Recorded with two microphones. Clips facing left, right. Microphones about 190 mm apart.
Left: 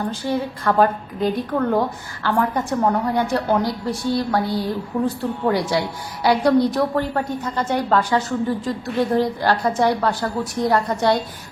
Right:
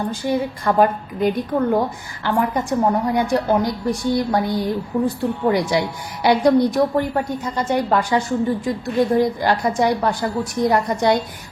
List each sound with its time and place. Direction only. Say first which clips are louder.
0.1 s a woman's voice: right 2 dB; 15° right (ahead or behind)